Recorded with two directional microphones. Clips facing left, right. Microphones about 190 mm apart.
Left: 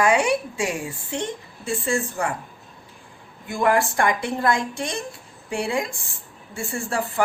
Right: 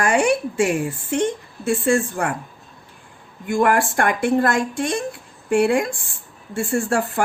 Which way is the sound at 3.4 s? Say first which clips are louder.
Right 3 dB; 50° right (ahead or behind).